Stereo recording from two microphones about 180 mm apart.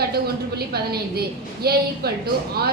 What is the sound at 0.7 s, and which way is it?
A woman's voice, 60° right (ahead or behind).